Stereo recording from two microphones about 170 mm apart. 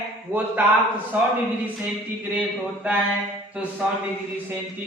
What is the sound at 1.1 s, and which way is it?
Speech, 10° right (ahead or behind).